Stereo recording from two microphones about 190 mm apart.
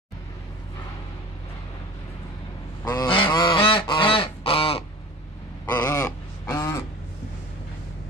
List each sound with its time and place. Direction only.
2.8 s goose: 20° left (ahead or behind)
5.7 s crow: 15° left (ahead or behind)